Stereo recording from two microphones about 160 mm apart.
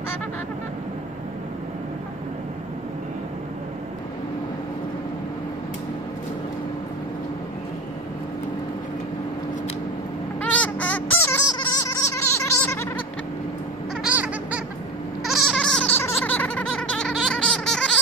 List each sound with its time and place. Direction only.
10.4 s fowl: 10° left (ahead or behind)
11.4 s a sound: 25° left (ahead or behind)
14.0 s bird: 10° right (ahead or behind)
15.2 s goat: centre (ahead or behind)